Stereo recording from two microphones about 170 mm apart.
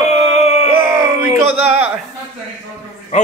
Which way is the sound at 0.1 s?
40° left (ahead or behind).